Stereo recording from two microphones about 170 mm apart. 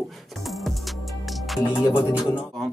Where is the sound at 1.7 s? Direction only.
25° left (ahead or behind).